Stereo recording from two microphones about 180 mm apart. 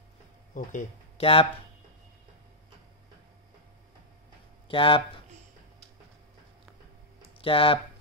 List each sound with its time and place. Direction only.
0.6 s speech: 45° left (ahead or behind)
4.6 s speech: 30° left (ahead or behind)
7.3 s speech: 30° left (ahead or behind)